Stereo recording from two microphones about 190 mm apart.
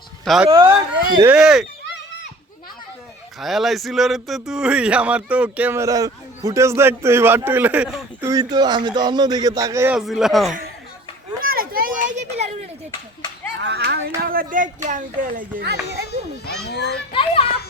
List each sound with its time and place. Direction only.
0.4 s speech: 25° right (ahead or behind)
1.2 s speech: 5° right (ahead or behind)
3.4 s speech: centre (ahead or behind)
8.2 s speech: 20° right (ahead or behind)
10.0 s speech: centre (ahead or behind)
11.4 s a sound: 50° right (ahead or behind)
13.6 s a sound: 60° right (ahead or behind)
14.2 s speech: 50° right (ahead or behind)
16.6 s a child's voice: 60° left (ahead or behind)
17.1 s a child's voice: 30° left (ahead or behind)